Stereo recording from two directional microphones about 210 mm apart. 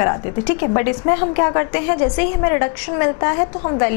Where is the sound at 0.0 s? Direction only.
15° left (ahead or behind).